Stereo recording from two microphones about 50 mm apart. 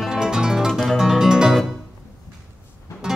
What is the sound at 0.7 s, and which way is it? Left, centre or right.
Music, centre.